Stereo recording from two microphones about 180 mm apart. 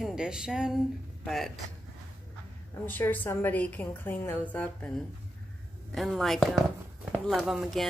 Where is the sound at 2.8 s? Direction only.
10° left (ahead or behind).